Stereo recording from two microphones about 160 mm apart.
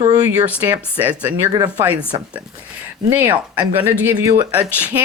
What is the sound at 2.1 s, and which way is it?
Speech, 25° right (ahead or behind).